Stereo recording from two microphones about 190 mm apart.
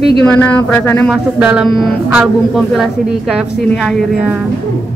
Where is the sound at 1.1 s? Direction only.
5° right (ahead or behind).